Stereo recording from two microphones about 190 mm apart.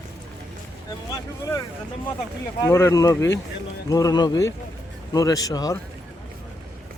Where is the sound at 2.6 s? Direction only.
15° left (ahead or behind).